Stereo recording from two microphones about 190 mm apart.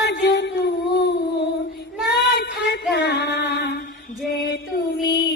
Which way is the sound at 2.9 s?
60° left (ahead or behind).